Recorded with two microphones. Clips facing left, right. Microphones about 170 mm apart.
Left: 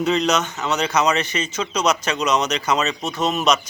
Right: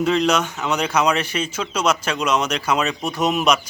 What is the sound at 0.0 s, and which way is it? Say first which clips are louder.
Speech: right 1 dB; 5° right (ahead or behind).